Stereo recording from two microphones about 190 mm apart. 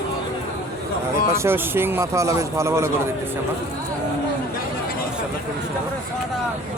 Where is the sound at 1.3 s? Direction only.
15° right (ahead or behind).